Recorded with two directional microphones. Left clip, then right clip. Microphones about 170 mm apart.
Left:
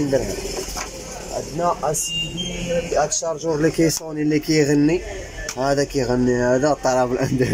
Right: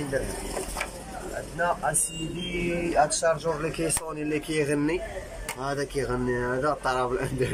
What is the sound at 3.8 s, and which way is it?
Speech, 35° left (ahead or behind).